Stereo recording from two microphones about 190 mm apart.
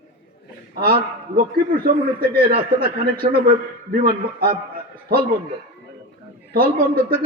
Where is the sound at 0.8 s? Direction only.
50° right (ahead or behind).